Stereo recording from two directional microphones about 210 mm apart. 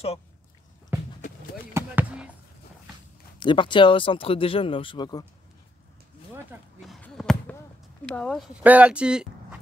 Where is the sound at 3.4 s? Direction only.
20° left (ahead or behind).